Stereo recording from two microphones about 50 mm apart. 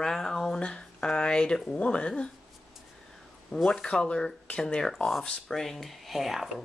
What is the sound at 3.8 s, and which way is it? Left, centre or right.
Speech, left.